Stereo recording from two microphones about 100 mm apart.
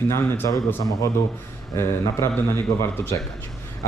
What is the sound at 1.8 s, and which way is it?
Speech, 25° left (ahead or behind).